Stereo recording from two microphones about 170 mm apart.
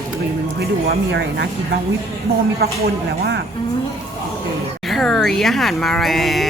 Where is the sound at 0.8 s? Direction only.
90° right.